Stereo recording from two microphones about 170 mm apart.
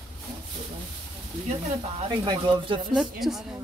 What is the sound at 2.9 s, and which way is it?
Speech, centre (ahead or behind).